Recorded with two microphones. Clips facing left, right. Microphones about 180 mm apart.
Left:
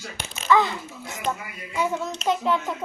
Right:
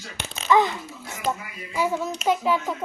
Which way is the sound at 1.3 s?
5° right (ahead or behind).